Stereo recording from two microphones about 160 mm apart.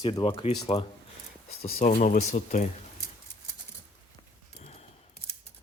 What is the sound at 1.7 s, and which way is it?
Speech, 55° left (ahead or behind).